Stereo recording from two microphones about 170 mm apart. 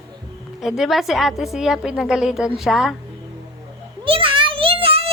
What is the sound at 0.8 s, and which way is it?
A woman's voice, centre (ahead or behind).